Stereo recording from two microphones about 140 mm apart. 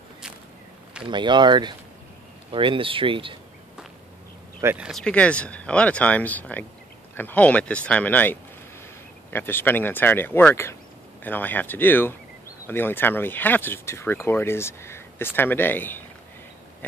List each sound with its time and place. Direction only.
1.1 s speech: 35° right (ahead or behind)
4.7 s speech: 5° right (ahead or behind)
5.0 s speech: 10° left (ahead or behind)